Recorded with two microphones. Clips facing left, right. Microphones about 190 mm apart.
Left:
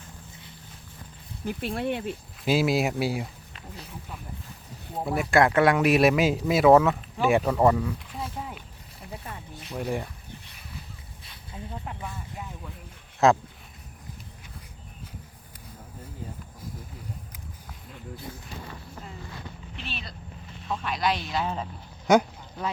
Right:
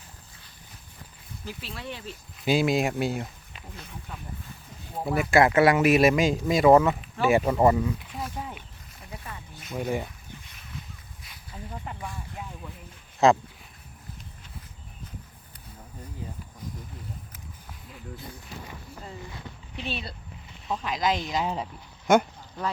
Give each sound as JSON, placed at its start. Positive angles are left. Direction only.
{"t": 1.5, "sound": "speech", "side_deg": 55}
{"t": 2.4, "sound": "speech", "side_deg": 0}
{"t": 5.0, "sound": "speech", "side_deg": 0}
{"t": 8.4, "sound": "a sound", "side_deg": 0}
{"t": 9.7, "sound": "speech", "side_deg": 0}
{"t": 11.9, "sound": "speech", "side_deg": 0}
{"t": 20.8, "sound": "speech", "side_deg": -20}
{"t": 22.0, "sound": "a sound", "side_deg": 0}